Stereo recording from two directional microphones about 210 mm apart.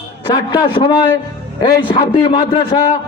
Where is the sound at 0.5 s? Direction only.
20° left (ahead or behind).